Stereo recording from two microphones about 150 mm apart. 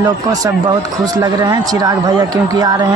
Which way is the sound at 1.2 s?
25° right (ahead or behind).